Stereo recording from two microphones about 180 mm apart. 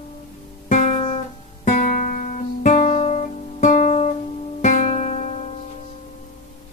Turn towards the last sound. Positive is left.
turn(degrees=40)  # may be behind; listen again after turning